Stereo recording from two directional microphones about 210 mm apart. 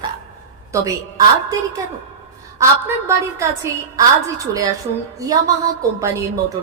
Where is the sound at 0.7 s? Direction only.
15° right (ahead or behind).